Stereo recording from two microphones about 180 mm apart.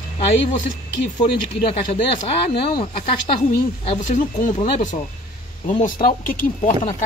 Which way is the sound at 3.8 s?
40° left (ahead or behind).